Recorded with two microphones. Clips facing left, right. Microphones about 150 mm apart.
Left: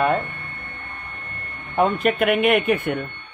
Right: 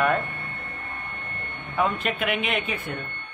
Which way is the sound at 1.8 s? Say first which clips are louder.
Left 6 dB; 50° left (ahead or behind).